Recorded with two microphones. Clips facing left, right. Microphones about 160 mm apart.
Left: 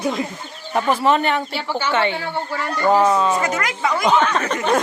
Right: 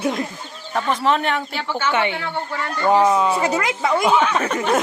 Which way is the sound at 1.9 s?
15° right (ahead or behind).